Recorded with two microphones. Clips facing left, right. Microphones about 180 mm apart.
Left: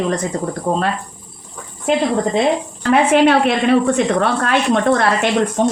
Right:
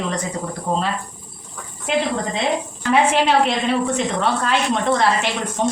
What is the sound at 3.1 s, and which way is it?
A woman's voice, 55° left (ahead or behind).